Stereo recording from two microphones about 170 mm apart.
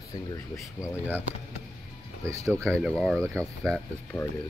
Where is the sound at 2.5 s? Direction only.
5° left (ahead or behind).